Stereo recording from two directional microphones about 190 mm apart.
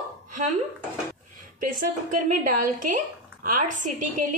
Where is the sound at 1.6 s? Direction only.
45° right (ahead or behind).